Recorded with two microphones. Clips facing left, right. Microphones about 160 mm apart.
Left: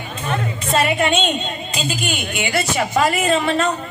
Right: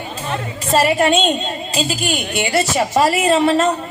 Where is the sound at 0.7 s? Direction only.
35° right (ahead or behind).